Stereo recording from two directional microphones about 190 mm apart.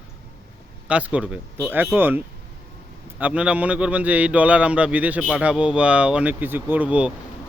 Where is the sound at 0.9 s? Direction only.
5° right (ahead or behind).